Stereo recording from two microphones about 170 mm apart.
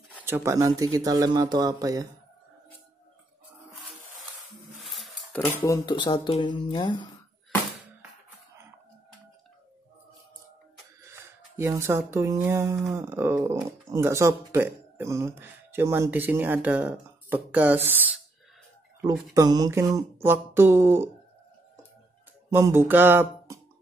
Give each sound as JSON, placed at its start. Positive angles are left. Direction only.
{"t": 0.2, "sound": "speech", "side_deg": -15}
{"t": 4.8, "sound": "dishes", "side_deg": 0}
{"t": 5.7, "sound": "speech", "side_deg": 25}
{"t": 11.1, "sound": "a sound", "side_deg": -15}
{"t": 12.1, "sound": "speech", "side_deg": -15}
{"t": 19.3, "sound": "speech", "side_deg": -25}
{"t": 22.5, "sound": "speech", "side_deg": -15}